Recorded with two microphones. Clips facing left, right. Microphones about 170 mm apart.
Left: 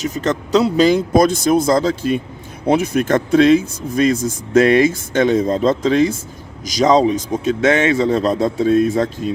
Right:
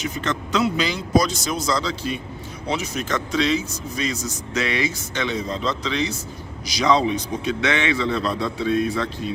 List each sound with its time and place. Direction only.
0.0 s a man's voice: 40° left (ahead or behind)